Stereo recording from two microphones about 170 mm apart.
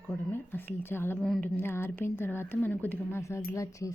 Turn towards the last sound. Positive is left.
turn(degrees=20)  # may be behind; listen again after turning